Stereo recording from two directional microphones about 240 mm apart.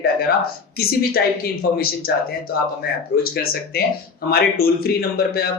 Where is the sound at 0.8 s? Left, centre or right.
Left.